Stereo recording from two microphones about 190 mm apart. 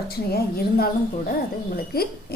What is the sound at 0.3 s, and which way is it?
A woman's voice, 55° left (ahead or behind).